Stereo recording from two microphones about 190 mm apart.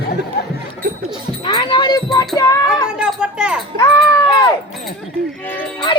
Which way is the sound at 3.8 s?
20° left (ahead or behind).